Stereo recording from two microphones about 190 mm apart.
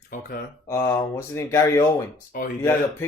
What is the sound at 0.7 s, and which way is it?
Speech, 15° left (ahead or behind).